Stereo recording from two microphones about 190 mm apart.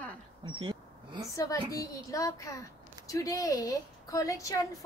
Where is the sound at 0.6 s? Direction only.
25° right (ahead or behind).